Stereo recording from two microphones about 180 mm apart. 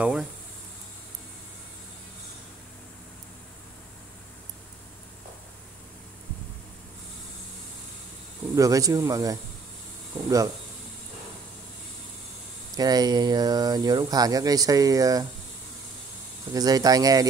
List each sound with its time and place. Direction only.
0.0 s speech: 5° right (ahead or behind)
8.5 s speech: 20° right (ahead or behind)
12.7 s speech: 20° right (ahead or behind)
16.5 s speech: 20° right (ahead or behind)